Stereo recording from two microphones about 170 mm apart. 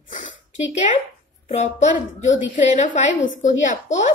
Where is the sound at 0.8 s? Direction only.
50° left (ahead or behind).